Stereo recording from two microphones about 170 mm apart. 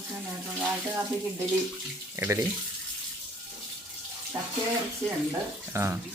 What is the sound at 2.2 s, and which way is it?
Speech, 15° right (ahead or behind).